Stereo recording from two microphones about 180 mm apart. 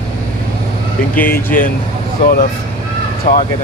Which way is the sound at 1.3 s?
50° left (ahead or behind).